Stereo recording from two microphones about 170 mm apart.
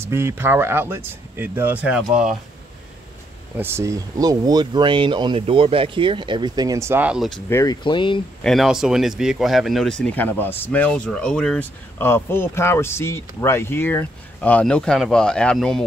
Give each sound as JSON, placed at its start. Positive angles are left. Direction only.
{"t": 0.0, "sound": "speech", "side_deg": -15}
{"t": 3.5, "sound": "speech", "side_deg": -15}
{"t": 7.4, "sound": "speech", "side_deg": 15}
{"t": 7.8, "sound": "speech", "side_deg": 30}
{"t": 8.5, "sound": "speech", "side_deg": 0}